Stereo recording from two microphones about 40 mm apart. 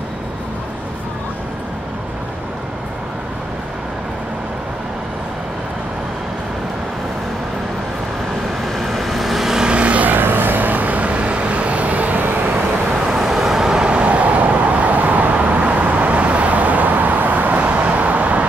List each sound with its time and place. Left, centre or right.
8.7 s vehicle: centre
9.7 s vehicle: right
10.0 s vehicle: right
12.2 s vehicle: right
13.2 s vehicle: centre; by 18.4 s right